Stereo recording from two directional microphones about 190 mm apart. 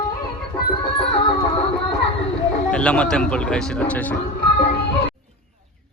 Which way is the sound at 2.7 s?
5° left (ahead or behind).